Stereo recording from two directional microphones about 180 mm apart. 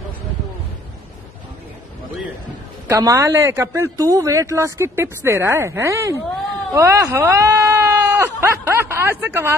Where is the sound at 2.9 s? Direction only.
15° right (ahead or behind).